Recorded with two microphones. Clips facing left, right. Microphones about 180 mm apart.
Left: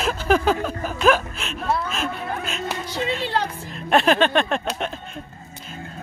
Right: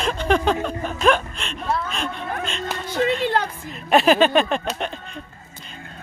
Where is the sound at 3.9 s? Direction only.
Centre (ahead or behind).